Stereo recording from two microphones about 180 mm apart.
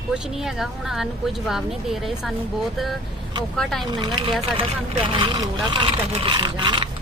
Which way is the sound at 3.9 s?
25° right (ahead or behind).